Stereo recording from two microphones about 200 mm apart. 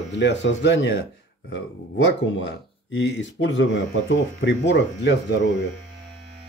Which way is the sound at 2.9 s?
65° left (ahead or behind).